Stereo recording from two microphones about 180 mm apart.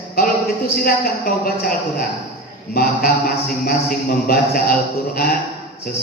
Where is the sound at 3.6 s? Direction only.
50° left (ahead or behind).